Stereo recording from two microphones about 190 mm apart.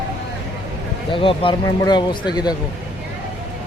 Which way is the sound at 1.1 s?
25° left (ahead or behind).